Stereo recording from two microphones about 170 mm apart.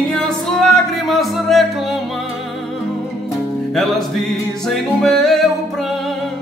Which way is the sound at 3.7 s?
Centre (ahead or behind).